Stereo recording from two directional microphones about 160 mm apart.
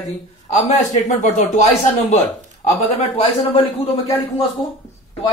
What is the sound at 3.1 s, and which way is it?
Speech, 40° left (ahead or behind).